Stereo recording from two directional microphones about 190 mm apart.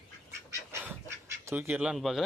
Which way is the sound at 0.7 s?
10° right (ahead or behind).